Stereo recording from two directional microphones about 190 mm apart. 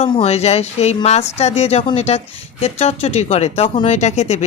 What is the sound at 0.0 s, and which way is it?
A woman's voice, 30° left (ahead or behind).